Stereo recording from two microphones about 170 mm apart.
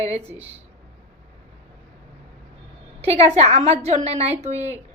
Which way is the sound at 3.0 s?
40° right (ahead or behind).